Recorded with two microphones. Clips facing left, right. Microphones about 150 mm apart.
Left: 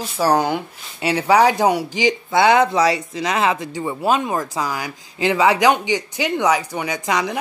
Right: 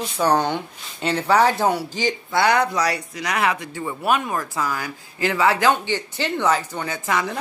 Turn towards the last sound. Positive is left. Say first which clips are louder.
# left 2 dB
turn(degrees=15)  # may be behind; listen again after turning